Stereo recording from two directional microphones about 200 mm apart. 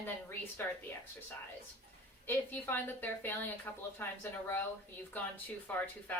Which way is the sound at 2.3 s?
10° left (ahead or behind).